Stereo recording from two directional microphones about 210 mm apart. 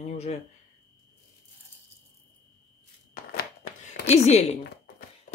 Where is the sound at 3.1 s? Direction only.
40° left (ahead or behind).